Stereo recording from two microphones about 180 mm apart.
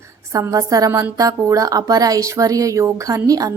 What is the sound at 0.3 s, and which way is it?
A woman's voice, 20° right (ahead or behind).